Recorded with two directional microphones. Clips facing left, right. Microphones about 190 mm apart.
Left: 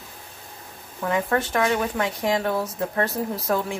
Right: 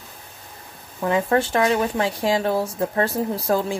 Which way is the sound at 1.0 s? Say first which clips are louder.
Right 4 dB; 25° right (ahead or behind).